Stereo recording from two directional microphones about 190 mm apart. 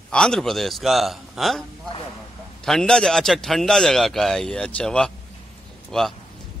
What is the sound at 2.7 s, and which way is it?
A man's voice, 5° left (ahead or behind).